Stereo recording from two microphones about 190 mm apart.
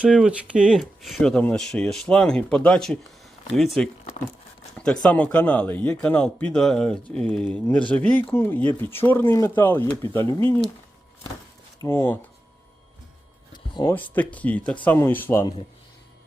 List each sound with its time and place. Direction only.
0.0 s speech: 5° right (ahead or behind)
5.0 s speech: 5° left (ahead or behind)
11.8 s speech: 15° left (ahead or behind)
13.5 s a sound: 25° left (ahead or behind)
13.9 s speech: 10° left (ahead or behind)